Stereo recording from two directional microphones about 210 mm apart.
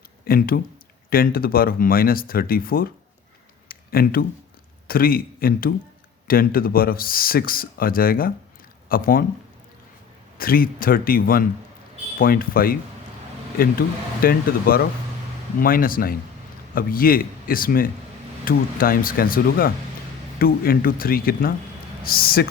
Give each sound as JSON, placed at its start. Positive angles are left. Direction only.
{"t": 0.3, "sound": "speech", "side_deg": 45}
{"t": 3.7, "sound": "a sound", "side_deg": 45}
{"t": 4.9, "sound": "speech", "side_deg": 45}
{"t": 10.3, "sound": "speech", "side_deg": 45}